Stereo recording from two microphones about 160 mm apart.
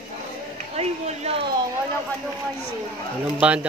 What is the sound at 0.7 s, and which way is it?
Speech, 40° right (ahead or behind).